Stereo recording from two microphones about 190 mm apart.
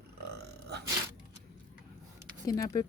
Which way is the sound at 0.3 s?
60° right (ahead or behind).